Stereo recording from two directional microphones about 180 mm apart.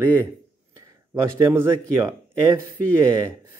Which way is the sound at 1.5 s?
15° right (ahead or behind).